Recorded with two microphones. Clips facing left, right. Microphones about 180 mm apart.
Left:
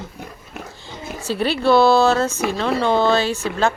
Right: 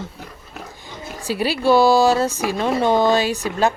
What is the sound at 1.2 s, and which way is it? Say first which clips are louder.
Speech: even; 10° right (ahead or behind).